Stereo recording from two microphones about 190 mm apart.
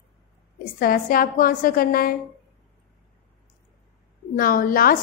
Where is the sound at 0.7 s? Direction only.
50° left (ahead or behind).